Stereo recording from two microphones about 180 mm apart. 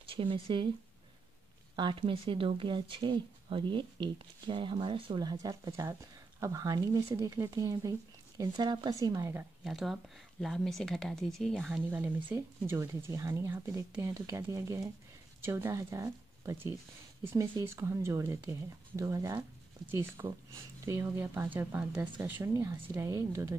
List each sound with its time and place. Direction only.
0.0 s speech: 30° right (ahead or behind)
1.8 s speech: 30° right (ahead or behind)
9.7 s speech: centre (ahead or behind)
11.9 s speech: 10° right (ahead or behind)